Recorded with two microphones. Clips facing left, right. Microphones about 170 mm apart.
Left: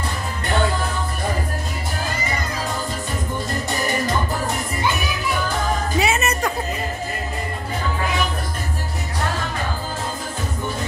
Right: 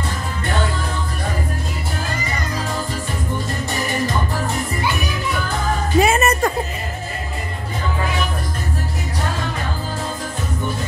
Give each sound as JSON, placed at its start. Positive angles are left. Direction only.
{"t": 5.9, "sound": "music", "side_deg": -50}